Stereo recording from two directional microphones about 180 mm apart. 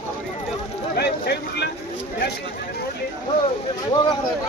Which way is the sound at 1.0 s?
65° left (ahead or behind).